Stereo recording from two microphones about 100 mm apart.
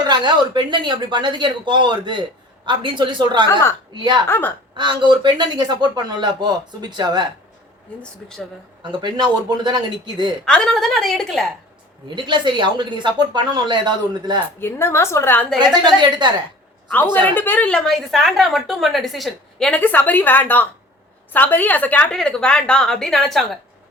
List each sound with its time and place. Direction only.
0.1 s speech: 50° right (ahead or behind)
4.3 s a woman's voice: 20° left (ahead or behind)
4.8 s speech: 50° right (ahead or behind)
8.0 s a woman's voice: 5° left (ahead or behind)
8.8 s speech: 50° right (ahead or behind)
10.4 s a woman's voice: 5° left (ahead or behind)
12.0 s speech: 50° right (ahead or behind)
14.6 s a woman's voice: 25° left (ahead or behind)
15.5 s speech: 50° right (ahead or behind)
16.9 s a woman's voice: 15° left (ahead or behind)
19.8 s a woman's voice: 20° left (ahead or behind); by 23.5 s centre (ahead or behind)